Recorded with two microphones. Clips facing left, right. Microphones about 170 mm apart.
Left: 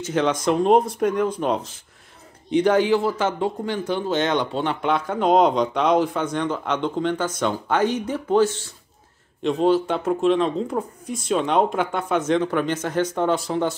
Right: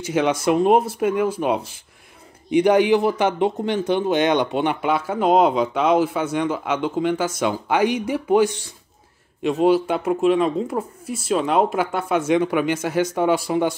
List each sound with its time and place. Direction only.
0.0 s speech: 10° right (ahead or behind)